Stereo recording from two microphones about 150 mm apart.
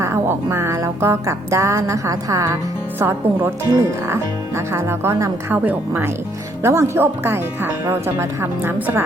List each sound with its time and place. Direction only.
0.0 s music: 15° right (ahead or behind)
3.0 s speech: 15° right (ahead or behind)